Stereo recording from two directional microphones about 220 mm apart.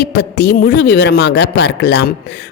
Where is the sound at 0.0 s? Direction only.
50° left (ahead or behind).